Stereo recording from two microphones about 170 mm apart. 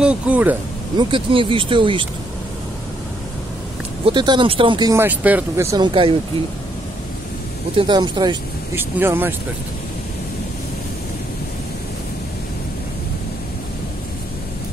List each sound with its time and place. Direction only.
0.0 s speech: 5° right (ahead or behind)
0.9 s speech: 30° right (ahead or behind)
4.0 s speech: 25° right (ahead or behind)
4.9 s speech: 10° right (ahead or behind); by 6.1 s 30° right (ahead or behind)
7.7 s speech: 30° right (ahead or behind)
8.7 s speech: 10° right (ahead or behind)